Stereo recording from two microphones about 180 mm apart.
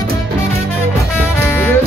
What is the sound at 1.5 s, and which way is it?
Music, 10° left (ahead or behind).